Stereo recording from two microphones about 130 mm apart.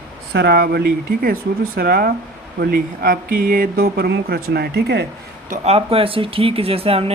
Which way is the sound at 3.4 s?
90° right.